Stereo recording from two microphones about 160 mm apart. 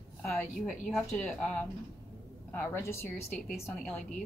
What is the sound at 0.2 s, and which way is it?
Speech, centre (ahead or behind).